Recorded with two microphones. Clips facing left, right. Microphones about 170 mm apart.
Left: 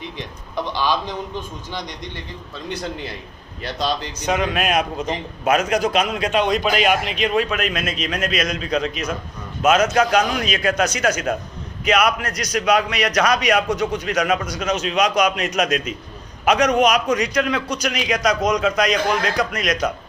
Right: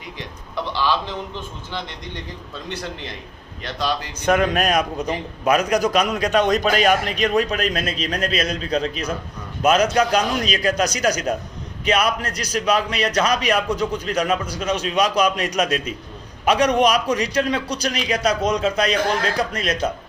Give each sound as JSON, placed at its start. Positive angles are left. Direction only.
{"t": 0.2, "sound": "a man's voice", "side_deg": 15}
{"t": 4.3, "sound": "a man's voice", "side_deg": -55}
{"t": 4.6, "sound": "a man's voice", "side_deg": -40}